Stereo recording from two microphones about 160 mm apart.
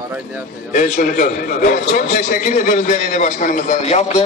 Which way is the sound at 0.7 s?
50° left (ahead or behind).